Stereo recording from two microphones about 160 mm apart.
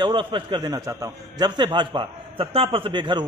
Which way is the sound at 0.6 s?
20° right (ahead or behind).